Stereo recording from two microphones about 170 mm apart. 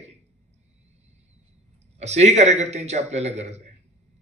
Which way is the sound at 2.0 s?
40° right (ahead or behind).